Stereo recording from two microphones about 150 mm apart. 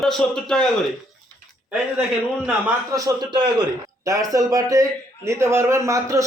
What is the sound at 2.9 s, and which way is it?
A man's voice, 20° right (ahead or behind).